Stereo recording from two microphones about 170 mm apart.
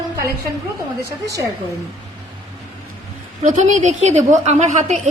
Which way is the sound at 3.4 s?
45° right (ahead or behind).